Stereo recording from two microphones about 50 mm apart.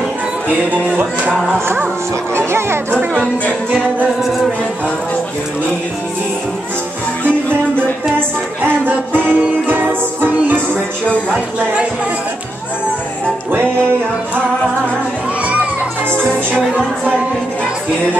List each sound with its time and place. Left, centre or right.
2.3 s speech: right
3.7 s music: left
8.6 s music: right
16.1 s music: centre